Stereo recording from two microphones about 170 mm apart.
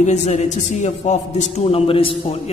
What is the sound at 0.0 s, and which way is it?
A man's voice, 40° left (ahead or behind).